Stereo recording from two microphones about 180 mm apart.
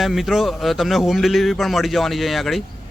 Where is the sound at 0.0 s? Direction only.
Centre (ahead or behind).